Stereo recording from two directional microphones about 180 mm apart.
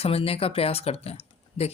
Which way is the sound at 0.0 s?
35° left (ahead or behind).